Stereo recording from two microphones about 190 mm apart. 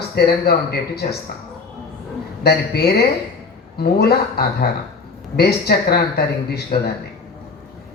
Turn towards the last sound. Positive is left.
turn(degrees=55)  # may be behind; listen again after turning